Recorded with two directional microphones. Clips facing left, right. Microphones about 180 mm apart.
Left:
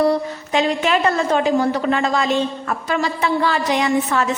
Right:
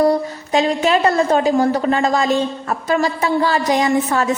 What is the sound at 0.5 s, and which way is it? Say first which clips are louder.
A woman's voice: right 2 dB; 35° right (ahead or behind).